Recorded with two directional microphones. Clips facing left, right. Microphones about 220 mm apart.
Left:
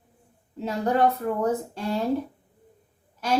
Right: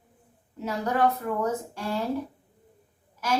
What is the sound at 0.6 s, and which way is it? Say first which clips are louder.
Speech: left 3 dB; 35° left (ahead or behind).